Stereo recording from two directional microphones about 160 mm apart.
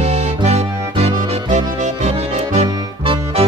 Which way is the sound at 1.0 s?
40° right (ahead or behind).